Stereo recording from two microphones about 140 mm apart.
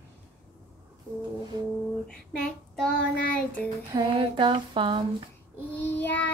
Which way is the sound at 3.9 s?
35° right (ahead or behind).